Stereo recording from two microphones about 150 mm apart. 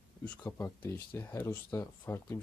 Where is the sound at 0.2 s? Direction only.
15° left (ahead or behind).